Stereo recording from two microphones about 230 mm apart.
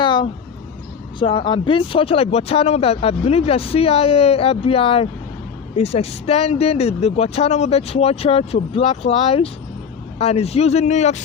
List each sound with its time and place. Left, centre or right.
1.2 s speech: left